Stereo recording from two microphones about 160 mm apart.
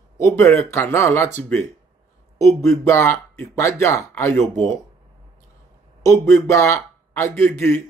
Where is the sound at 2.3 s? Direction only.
20° left (ahead or behind).